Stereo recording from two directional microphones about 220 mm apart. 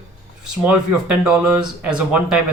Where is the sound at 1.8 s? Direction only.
5° right (ahead or behind).